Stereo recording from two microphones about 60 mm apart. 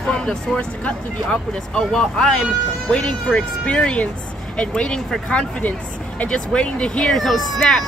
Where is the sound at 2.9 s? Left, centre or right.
Centre.